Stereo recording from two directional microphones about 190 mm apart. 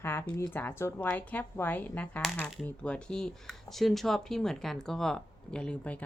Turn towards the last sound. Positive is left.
turn(degrees=5)  # may be behind; listen again after turning